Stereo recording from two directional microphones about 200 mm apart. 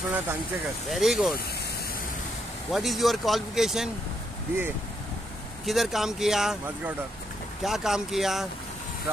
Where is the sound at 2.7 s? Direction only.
Centre (ahead or behind).